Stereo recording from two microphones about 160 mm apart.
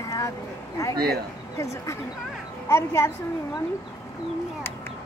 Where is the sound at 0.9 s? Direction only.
70° right (ahead or behind).